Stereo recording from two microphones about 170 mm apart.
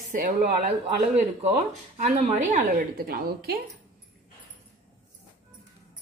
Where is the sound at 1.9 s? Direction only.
45° right (ahead or behind); by 3.6 s 65° right (ahead or behind).